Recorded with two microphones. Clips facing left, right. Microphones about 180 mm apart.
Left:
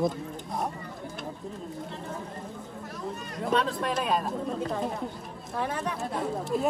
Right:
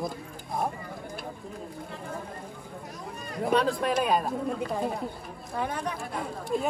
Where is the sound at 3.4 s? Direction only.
50° right (ahead or behind).